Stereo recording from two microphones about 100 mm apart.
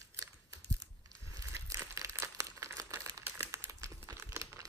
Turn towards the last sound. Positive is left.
turn(degrees=-35)  # may be behind; listen again after turning